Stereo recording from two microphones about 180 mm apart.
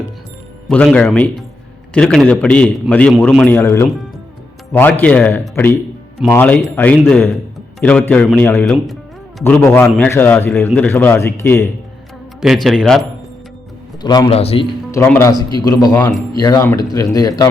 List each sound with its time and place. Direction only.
0.7 s a man's voice: 5° left (ahead or behind)
9.4 s a man's voice: 10° left (ahead or behind)
14.0 s speech: 25° left (ahead or behind)
14.9 s a man's voice: 15° left (ahead or behind)